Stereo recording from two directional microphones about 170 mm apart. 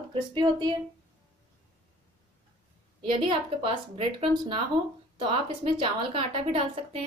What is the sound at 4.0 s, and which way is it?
A woman's voice, 35° right (ahead or behind).